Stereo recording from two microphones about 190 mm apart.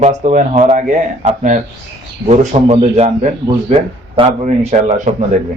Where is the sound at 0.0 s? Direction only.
40° right (ahead or behind).